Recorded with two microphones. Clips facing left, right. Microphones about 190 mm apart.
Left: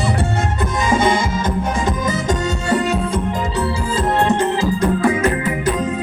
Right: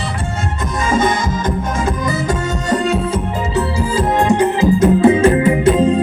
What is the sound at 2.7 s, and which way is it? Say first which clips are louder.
Music: right 2 dB; centre (ahead or behind).